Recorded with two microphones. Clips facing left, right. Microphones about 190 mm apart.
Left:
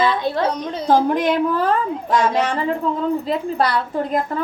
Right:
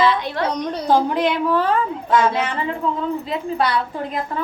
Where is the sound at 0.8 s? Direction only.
45° left (ahead or behind).